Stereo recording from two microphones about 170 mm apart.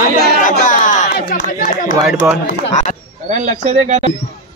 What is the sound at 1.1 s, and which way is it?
Speech, 60° left (ahead or behind).